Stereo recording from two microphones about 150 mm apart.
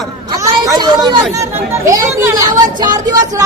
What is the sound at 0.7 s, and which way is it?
A woman's voice, 30° right (ahead or behind).